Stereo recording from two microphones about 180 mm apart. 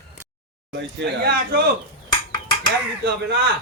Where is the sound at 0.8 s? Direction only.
70° right (ahead or behind).